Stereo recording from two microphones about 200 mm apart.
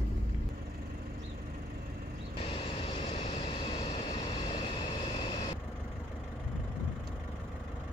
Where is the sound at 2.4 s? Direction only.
30° left (ahead or behind).